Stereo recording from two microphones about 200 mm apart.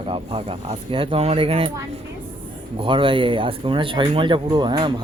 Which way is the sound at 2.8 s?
25° right (ahead or behind).